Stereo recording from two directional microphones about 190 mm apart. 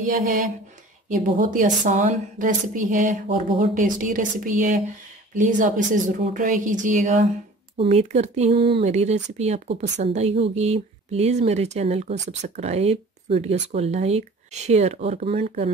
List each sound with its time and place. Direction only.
0.0 s a woman's voice: 40° right (ahead or behind)